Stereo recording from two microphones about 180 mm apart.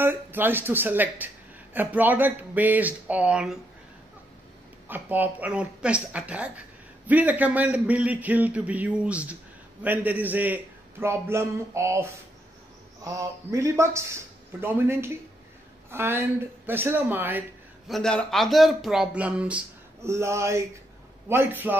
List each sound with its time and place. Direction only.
0.0 s speech: 10° right (ahead or behind)
4.8 s a man's voice: 10° right (ahead or behind)
17.8 s a man's voice: centre (ahead or behind)